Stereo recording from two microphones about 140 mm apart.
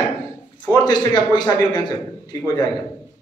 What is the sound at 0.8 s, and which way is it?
A man's voice, 30° left (ahead or behind).